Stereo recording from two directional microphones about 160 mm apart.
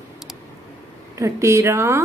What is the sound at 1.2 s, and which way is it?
Speech, 20° right (ahead or behind).